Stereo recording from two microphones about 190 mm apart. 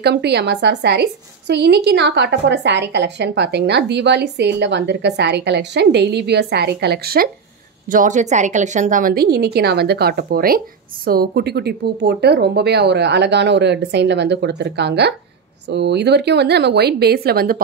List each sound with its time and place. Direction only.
0.0 s a woman's voice: 60° right (ahead or behind)
7.9 s a woman's voice: 40° right (ahead or behind)